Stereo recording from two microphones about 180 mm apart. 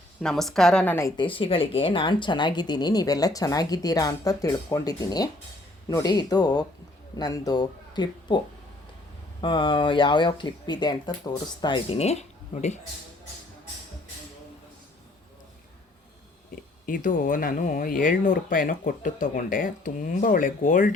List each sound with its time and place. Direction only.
0.2 s a woman's voice: 5° left (ahead or behind)
1.1 s speech: 30° left (ahead or behind)
9.4 s speech: 25° left (ahead or behind)
16.8 s speech: 50° left (ahead or behind)